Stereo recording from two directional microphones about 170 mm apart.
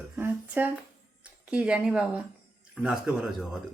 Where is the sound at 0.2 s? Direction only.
10° right (ahead or behind).